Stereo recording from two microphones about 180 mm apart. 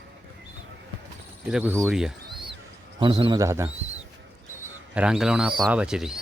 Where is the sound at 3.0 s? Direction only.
25° right (ahead or behind).